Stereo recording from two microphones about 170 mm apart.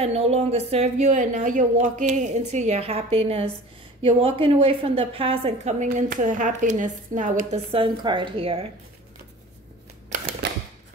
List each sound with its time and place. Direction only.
0.0 s a woman's voice: 40° right (ahead or behind)
5.9 s speech: 50° right (ahead or behind)
7.7 s a woman's voice: 30° right (ahead or behind)
10.4 s a sound: 85° right